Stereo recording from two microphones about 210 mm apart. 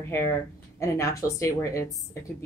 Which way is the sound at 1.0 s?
15° left (ahead or behind).